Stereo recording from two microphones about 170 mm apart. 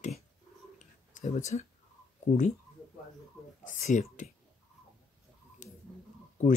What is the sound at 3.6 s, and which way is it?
Speech, 50° left (ahead or behind).